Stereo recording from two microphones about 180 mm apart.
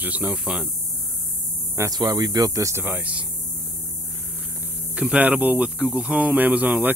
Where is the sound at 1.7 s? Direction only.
20° right (ahead or behind).